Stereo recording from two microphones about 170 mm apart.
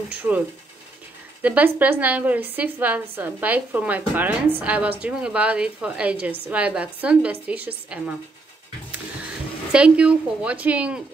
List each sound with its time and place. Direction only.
1.4 s a woman's voice: 10° right (ahead or behind)
9.7 s a woman's voice: 5° right (ahead or behind)